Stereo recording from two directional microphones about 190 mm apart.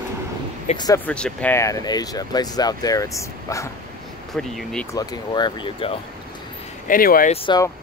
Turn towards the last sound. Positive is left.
turn(degrees=25)  # may be behind; listen again after turning